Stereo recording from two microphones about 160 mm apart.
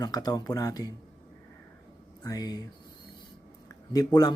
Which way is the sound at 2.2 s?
25° left (ahead or behind).